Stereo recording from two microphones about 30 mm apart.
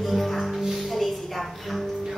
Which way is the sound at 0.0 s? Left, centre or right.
Centre.